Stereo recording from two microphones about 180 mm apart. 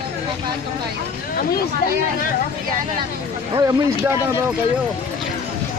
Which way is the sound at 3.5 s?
20° right (ahead or behind).